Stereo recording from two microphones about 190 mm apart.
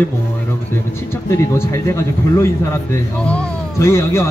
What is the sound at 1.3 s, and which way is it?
Speech, 15° left (ahead or behind).